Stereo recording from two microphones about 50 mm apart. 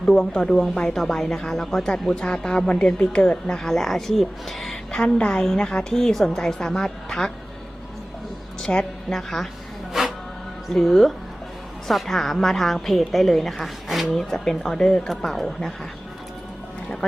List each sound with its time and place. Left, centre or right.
0.0 s speech: centre
3.6 s speech: centre
5.0 s speech: left
8.6 s a woman's voice: centre
9.1 s a woman's voice: centre
10.0 s music: centre
10.7 s a woman's voice: centre